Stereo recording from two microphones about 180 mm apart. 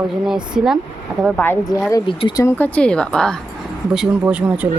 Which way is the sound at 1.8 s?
20° left (ahead or behind).